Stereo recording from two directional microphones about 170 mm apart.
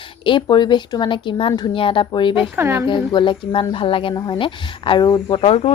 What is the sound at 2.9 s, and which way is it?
Speech, 30° left (ahead or behind).